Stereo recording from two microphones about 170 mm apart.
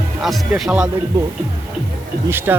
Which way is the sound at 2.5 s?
15° right (ahead or behind).